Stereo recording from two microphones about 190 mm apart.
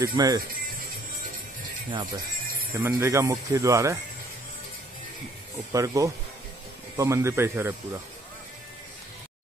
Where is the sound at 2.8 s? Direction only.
15° right (ahead or behind).